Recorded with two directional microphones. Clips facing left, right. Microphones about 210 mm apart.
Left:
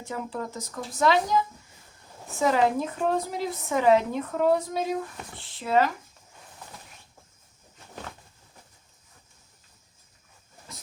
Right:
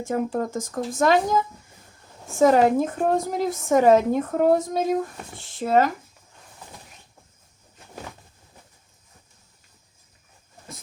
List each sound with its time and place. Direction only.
0.0 s a woman's voice: 50° right (ahead or behind)